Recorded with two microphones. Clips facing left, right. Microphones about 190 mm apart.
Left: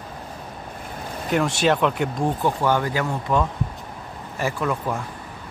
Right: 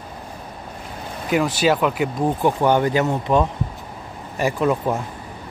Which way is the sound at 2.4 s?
20° right (ahead or behind).